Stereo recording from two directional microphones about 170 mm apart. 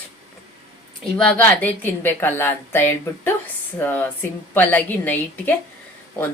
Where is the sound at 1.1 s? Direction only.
10° left (ahead or behind).